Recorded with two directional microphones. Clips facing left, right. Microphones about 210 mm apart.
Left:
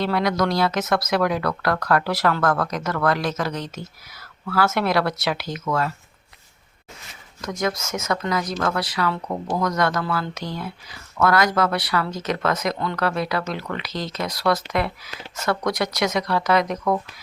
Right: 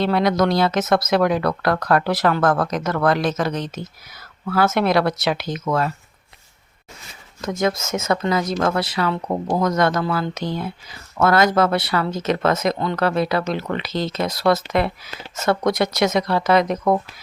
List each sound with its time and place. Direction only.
0.0 s speech: 25° right (ahead or behind)
7.4 s speech: 25° right (ahead or behind)